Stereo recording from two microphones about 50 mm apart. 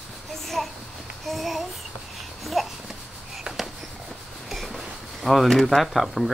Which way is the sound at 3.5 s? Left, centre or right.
Right.